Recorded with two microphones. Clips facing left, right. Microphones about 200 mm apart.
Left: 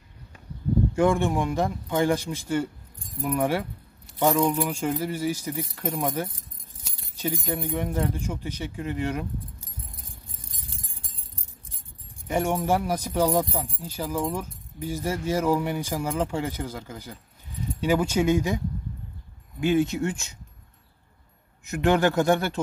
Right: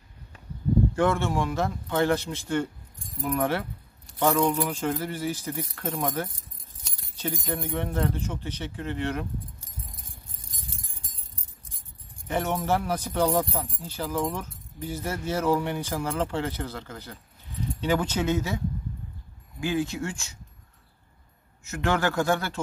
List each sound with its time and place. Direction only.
0.9 s speech: 15° left (ahead or behind)
12.3 s speech: 10° left (ahead or behind)
19.6 s speech: 20° left (ahead or behind)
21.6 s speech: 20° left (ahead or behind)